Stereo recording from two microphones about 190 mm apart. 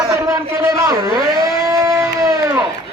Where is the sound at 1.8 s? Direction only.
15° right (ahead or behind).